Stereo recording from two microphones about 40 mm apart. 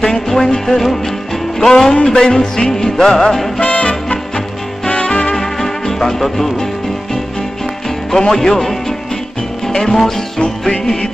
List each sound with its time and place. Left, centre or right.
0.0 s music: centre
3.6 s music: left
4.8 s music: left
5.3 s music: centre
8.1 s speech: centre
9.7 s music: centre